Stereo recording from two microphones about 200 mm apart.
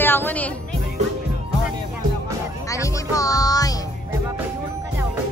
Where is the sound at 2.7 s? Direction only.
15° left (ahead or behind).